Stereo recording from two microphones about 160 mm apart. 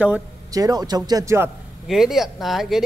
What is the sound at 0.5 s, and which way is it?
Speech, 20° right (ahead or behind).